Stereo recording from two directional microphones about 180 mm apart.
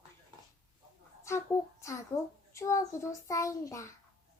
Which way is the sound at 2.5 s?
15° left (ahead or behind).